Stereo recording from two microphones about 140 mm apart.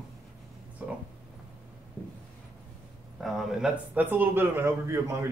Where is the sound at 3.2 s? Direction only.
Centre (ahead or behind).